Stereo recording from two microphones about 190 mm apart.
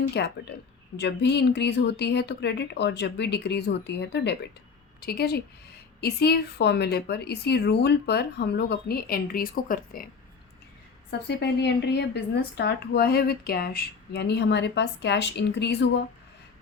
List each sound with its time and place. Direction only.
0.1 s a woman's voice: 60° left (ahead or behind)
11.3 s speech: 65° left (ahead or behind)